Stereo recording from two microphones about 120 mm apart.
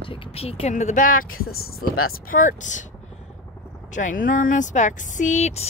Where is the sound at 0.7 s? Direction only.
85° left.